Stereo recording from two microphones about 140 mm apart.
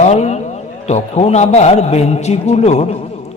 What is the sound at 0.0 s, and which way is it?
Speech, 55° left (ahead or behind).